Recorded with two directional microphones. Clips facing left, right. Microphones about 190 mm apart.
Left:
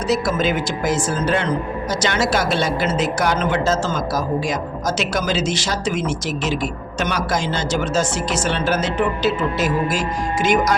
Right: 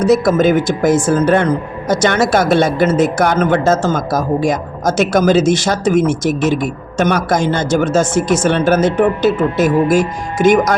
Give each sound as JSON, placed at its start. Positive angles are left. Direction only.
{"t": 0.0, "sound": "speech", "side_deg": -50}